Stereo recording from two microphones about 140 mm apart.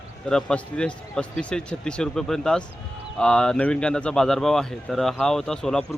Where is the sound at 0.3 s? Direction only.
5° left (ahead or behind).